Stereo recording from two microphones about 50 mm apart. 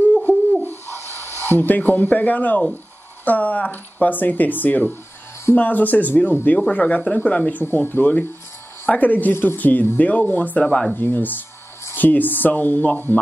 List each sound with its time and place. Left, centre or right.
0.0 s bird: left
0.7 s owl: right
1.4 s speech: left
7.6 s speech: left
10.6 s speech: centre
11.0 s speech: left